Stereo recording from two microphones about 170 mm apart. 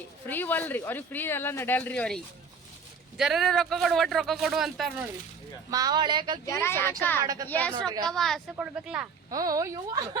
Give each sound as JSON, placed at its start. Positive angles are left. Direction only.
{"t": 0.3, "sound": "speech", "side_deg": 10}
{"t": 5.7, "sound": "speech", "side_deg": -25}
{"t": 6.4, "sound": "speech", "side_deg": 15}
{"t": 7.2, "sound": "speech", "side_deg": -20}
{"t": 7.4, "sound": "speech", "side_deg": 10}
{"t": 9.3, "sound": "speech", "side_deg": -20}